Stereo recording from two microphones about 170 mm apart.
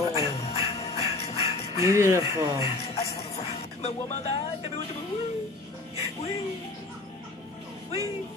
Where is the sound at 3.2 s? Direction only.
40° left (ahead or behind).